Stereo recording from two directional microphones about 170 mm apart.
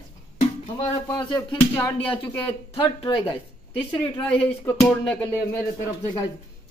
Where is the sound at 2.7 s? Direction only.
30° left (ahead or behind).